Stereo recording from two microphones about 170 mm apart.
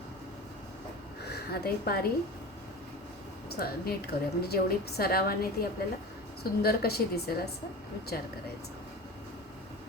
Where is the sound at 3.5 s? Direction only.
65° left (ahead or behind).